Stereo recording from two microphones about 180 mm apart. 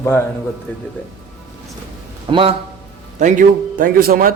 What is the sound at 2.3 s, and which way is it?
Speech, 30° right (ahead or behind).